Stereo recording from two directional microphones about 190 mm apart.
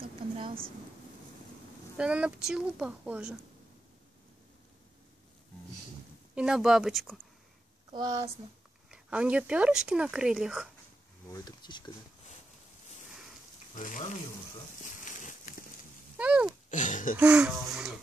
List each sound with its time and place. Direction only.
2.0 s speech: 5° right (ahead or behind)
6.3 s speech: 5° right (ahead or behind)
7.9 s speech: 20° right (ahead or behind)
8.9 s speech: 5° right (ahead or behind)
11.2 s speech: 20° left (ahead or behind)
13.7 s speech: 40° left (ahead or behind)
14.8 s a sound: 40° left (ahead or behind)
16.2 s speech: 5° right (ahead or behind)
16.7 s a sound: 40° left (ahead or behind)
17.2 s speech: 5° right (ahead or behind)